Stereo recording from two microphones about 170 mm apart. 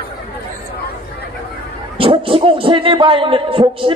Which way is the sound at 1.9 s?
30° right (ahead or behind).